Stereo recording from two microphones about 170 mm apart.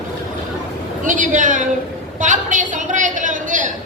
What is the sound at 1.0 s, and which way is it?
A woman's voice, 50° right (ahead or behind).